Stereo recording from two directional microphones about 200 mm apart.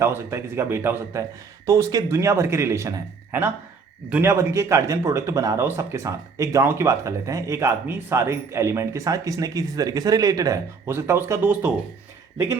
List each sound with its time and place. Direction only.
0.0 s speech: 15° right (ahead or behind)
4.1 s speech: 15° right (ahead or behind)